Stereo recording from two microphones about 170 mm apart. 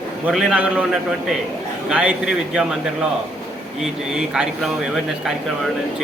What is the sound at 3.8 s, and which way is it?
Speech, 5° right (ahead or behind).